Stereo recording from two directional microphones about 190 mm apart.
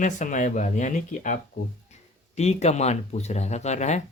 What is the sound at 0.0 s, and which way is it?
Speech, 40° left (ahead or behind).